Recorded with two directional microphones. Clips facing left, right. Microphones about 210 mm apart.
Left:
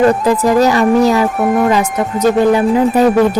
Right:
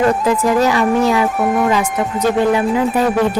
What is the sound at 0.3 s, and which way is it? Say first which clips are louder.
Speech: left 3 dB; 40° left (ahead or behind).